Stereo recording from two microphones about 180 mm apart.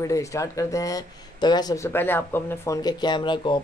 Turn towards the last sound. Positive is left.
turn(degrees=25)  # may be behind; listen again after turning